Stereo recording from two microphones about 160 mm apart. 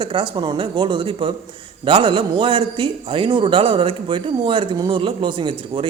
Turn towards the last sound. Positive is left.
turn(degrees=-30)  # may be behind; listen again after turning